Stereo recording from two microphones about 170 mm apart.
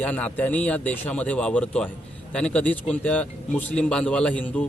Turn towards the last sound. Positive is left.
turn(degrees=10)  # may be behind; listen again after turning